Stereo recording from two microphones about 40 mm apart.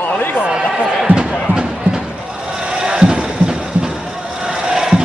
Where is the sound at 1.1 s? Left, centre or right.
Right.